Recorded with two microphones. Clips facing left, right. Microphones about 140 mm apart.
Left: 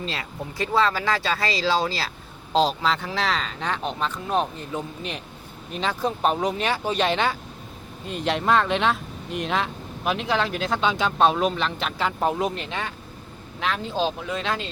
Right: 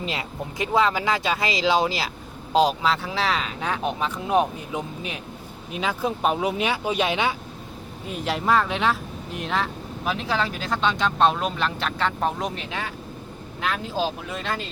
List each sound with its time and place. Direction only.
0.0 s speech: 20° right (ahead or behind)